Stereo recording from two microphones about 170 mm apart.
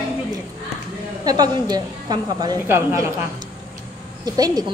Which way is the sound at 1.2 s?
25° right (ahead or behind).